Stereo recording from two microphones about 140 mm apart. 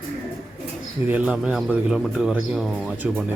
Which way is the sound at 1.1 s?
10° right (ahead or behind).